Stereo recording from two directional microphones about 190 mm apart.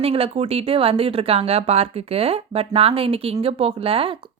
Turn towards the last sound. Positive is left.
turn(degrees=-30)  # may be behind; listen again after turning